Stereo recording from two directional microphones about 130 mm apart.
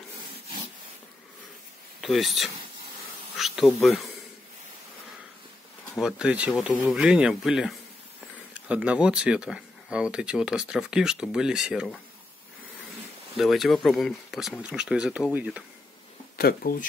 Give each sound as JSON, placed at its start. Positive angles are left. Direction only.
{"t": 2.0, "sound": "speech", "side_deg": 0}
{"t": 5.9, "sound": "speech", "side_deg": -5}
{"t": 13.4, "sound": "speech", "side_deg": 0}
{"t": 16.6, "sound": "speech", "side_deg": 90}